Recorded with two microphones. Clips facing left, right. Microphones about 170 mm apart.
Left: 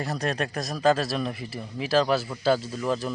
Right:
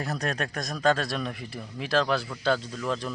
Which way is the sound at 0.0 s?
Centre (ahead or behind).